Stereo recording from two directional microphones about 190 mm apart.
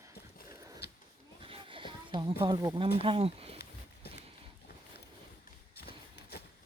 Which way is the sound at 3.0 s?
30° right (ahead or behind).